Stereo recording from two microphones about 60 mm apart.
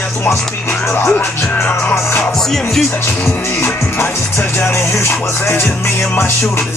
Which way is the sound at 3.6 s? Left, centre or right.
Left.